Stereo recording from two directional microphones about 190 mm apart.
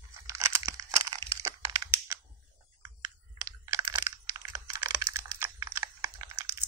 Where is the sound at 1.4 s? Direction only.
15° right (ahead or behind).